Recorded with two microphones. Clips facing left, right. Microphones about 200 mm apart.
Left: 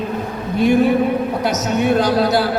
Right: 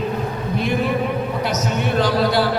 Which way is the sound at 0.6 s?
45° left (ahead or behind).